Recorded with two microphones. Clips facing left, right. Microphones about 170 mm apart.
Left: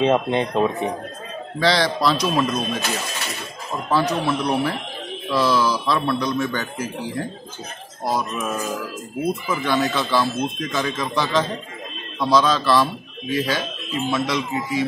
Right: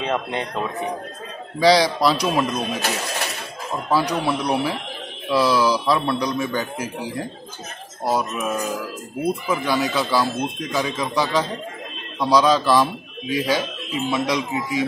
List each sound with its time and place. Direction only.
0.0 s speech: 20° left (ahead or behind)
1.6 s speech: 10° right (ahead or behind)
3.9 s speech: 10° right (ahead or behind)